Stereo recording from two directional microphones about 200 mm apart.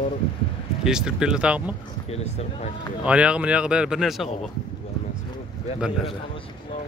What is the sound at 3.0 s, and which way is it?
Speech, 5° right (ahead or behind).